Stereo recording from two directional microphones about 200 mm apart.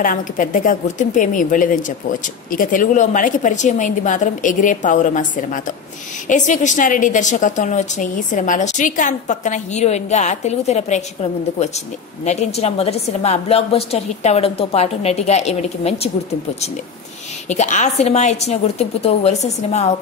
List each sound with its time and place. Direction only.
0.0 s a woman's voice: 40° left (ahead or behind)
12.3 s a woman's voice: 35° left (ahead or behind)
17.5 s a woman's voice: 35° left (ahead or behind)